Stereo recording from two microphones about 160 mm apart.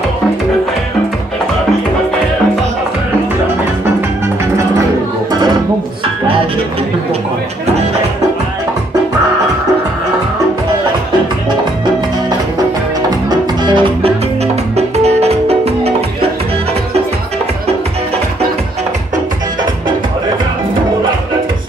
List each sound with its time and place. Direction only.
13.3 s music: 30° right (ahead or behind)